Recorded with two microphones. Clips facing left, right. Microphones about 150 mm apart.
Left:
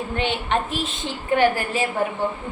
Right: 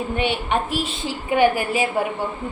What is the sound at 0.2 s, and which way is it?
A woman's voice, 10° right (ahead or behind).